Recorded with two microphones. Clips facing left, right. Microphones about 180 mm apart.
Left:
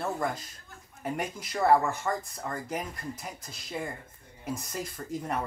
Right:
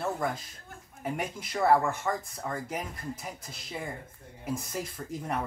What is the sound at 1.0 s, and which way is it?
Speech, centre (ahead or behind).